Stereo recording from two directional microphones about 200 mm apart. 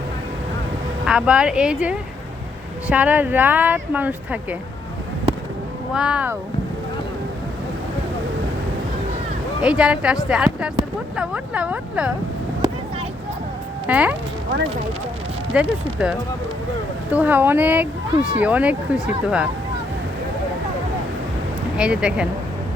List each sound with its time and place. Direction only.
1.0 s speech: 5° right (ahead or behind)
5.9 s speech: 5° right (ahead or behind)
9.6 s speech: 5° right (ahead or behind)
12.6 s vehicle: 20° right (ahead or behind)
13.8 s speech: 5° right (ahead or behind)
15.5 s speech: 5° right (ahead or behind)
21.8 s speech: 5° right (ahead or behind)